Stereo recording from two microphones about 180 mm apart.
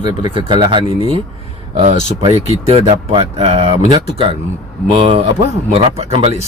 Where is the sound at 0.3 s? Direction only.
25° right (ahead or behind).